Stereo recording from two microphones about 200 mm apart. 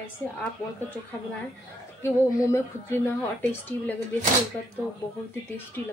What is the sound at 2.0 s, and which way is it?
A woman's voice, 10° left (ahead or behind).